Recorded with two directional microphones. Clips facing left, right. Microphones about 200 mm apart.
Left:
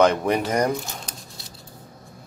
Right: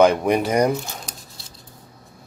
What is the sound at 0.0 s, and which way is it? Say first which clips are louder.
Speech: right 3 dB; 15° right (ahead or behind).